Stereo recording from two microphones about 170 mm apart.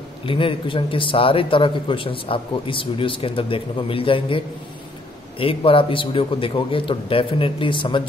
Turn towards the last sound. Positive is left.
turn(degrees=30)  # may be behind; listen again after turning